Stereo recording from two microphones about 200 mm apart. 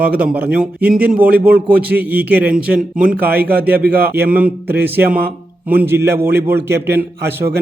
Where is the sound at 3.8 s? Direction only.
50° right (ahead or behind).